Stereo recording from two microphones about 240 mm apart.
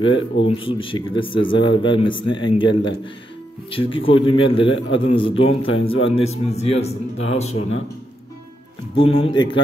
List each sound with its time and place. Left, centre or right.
0.1 s speech: left
8.9 s speech: left